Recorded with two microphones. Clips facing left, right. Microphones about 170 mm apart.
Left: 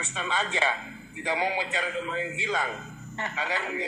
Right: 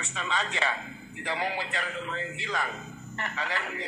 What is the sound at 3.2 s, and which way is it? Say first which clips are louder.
Speech: left 2 dB; 20° left (ahead or behind).